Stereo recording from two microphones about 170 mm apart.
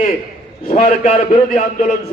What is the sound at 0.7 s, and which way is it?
Speech, 35° left (ahead or behind).